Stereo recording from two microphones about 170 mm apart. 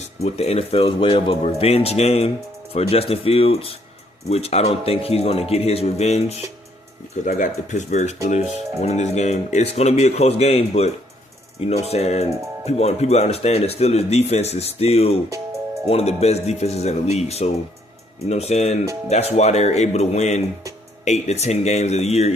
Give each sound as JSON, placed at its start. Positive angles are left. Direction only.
{"t": 0.0, "sound": "speech", "side_deg": 40}